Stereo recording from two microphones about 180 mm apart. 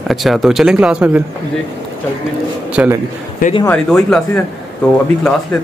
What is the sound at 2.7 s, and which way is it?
Speech, 5° right (ahead or behind).